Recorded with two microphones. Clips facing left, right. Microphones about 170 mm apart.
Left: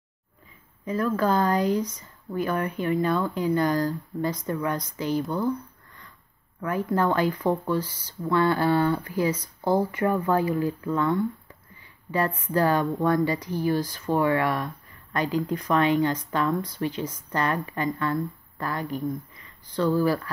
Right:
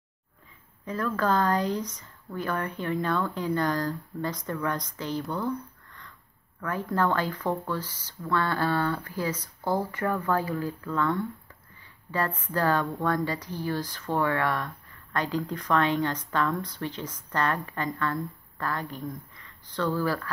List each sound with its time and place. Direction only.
0.8 s speech: 15° left (ahead or behind)
6.6 s speech: 15° left (ahead or behind)